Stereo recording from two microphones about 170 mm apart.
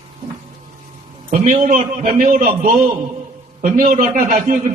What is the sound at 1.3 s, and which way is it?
A man's voice, 45° right (ahead or behind).